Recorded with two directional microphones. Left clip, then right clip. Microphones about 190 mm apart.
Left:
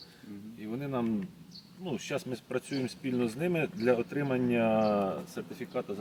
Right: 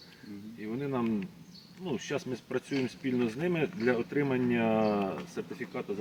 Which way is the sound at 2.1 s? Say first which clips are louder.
Left 1 dB; 25° left (ahead or behind).